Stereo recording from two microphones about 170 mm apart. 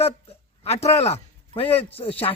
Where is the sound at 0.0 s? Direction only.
35° left (ahead or behind).